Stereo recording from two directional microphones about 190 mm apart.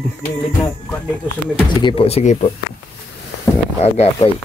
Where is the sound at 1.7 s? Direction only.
25° left (ahead or behind).